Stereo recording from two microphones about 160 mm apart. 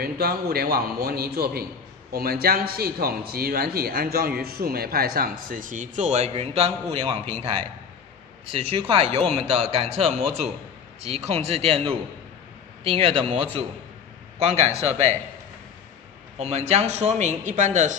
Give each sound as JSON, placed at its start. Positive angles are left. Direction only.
{"t": 0.0, "sound": "a man's voice", "side_deg": -75}
{"t": 14.4, "sound": "speech", "side_deg": -40}
{"t": 16.3, "sound": "speech", "side_deg": -40}